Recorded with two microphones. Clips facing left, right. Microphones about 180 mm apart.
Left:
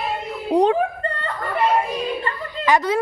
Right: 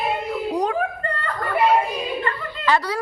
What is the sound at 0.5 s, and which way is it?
Speech, 30° left (ahead or behind).